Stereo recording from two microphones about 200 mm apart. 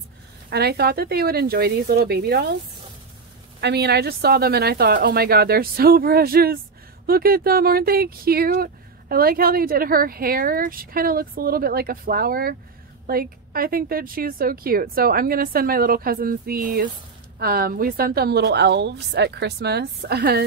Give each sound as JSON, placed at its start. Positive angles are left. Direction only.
{"t": 0.5, "sound": "a woman's voice", "side_deg": -55}
{"t": 3.6, "sound": "a woman's voice", "side_deg": -55}